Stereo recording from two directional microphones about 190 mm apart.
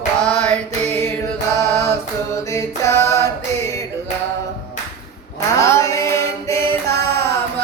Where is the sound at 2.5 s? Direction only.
15° left (ahead or behind).